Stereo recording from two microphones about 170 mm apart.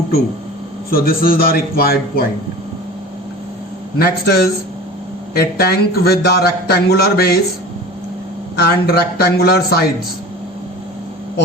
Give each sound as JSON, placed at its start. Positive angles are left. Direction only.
{"t": 0.9, "sound": "a man's voice", "side_deg": 60}
{"t": 3.9, "sound": "a man's voice", "side_deg": 65}
{"t": 8.5, "sound": "a man's voice", "side_deg": 70}